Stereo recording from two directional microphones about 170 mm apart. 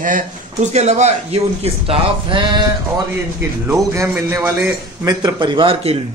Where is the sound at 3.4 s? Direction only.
15° right (ahead or behind).